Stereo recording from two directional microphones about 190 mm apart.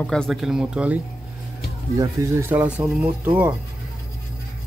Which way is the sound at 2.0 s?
15° right (ahead or behind).